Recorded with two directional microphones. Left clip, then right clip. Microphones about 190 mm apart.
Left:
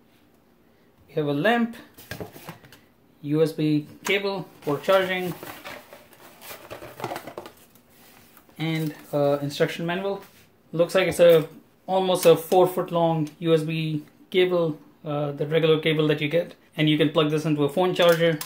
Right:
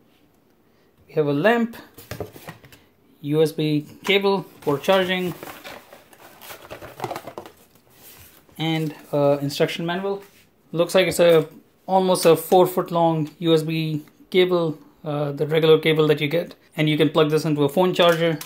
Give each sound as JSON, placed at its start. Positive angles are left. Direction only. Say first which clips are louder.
{"t": 1.1, "sound": "speech", "louder": "right 4 dB", "side_deg": -40}
{"t": 3.2, "sound": "speech", "louder": "right 3 dB", "side_deg": -35}
{"t": 8.5, "sound": "speech", "louder": "right 4 dB", "side_deg": -40}
{"t": 11.8, "sound": "speech", "louder": "right 2 dB", "side_deg": -30}